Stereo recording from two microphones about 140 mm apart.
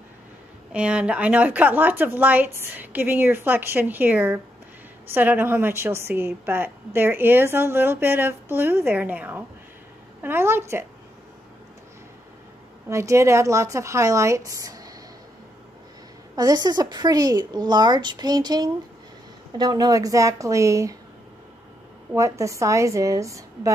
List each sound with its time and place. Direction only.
0.7 s a woman's voice: 5° right (ahead or behind)
12.8 s a woman's voice: 20° right (ahead or behind)
16.3 s a woman's voice: 30° right (ahead or behind)
22.1 s a woman's voice: 20° right (ahead or behind)